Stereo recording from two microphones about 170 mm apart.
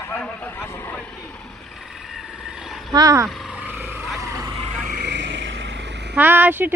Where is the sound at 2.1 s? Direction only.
Centre (ahead or behind).